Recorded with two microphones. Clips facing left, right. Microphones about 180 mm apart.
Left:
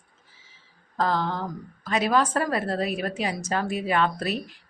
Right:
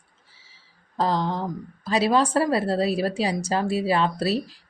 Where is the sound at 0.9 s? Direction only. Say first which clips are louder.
Right 2 dB; 30° right (ahead or behind).